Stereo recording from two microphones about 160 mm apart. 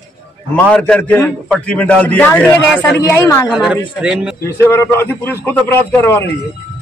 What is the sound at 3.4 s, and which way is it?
Speech, 5° right (ahead or behind).